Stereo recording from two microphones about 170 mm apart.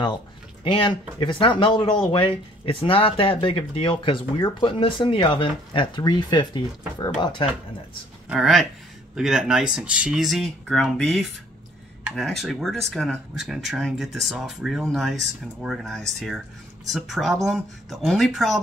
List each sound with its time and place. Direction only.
0.7 s speech: 30° left (ahead or behind)
8.3 s speech: centre (ahead or behind)